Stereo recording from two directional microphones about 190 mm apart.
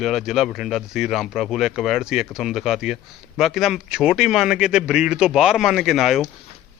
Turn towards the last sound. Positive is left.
turn(degrees=0)  # may be behind; listen again after turning